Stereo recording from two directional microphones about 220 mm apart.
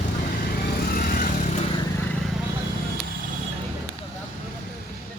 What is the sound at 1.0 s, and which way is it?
Vehicle, 40° left (ahead or behind).